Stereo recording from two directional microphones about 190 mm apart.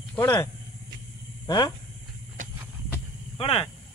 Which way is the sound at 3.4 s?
25° left (ahead or behind).